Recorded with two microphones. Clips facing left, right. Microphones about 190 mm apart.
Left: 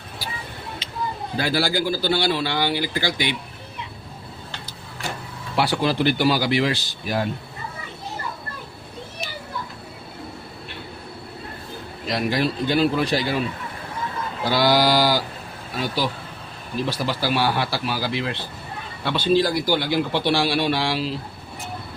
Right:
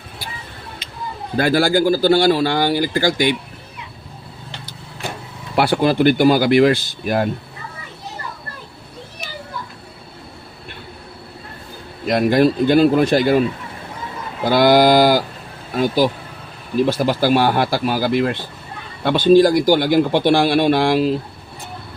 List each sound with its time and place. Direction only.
1.4 s speech: 50° right (ahead or behind)
5.5 s speech: 55° right (ahead or behind)
12.0 s speech: 55° right (ahead or behind)
14.4 s speech: 50° right (ahead or behind)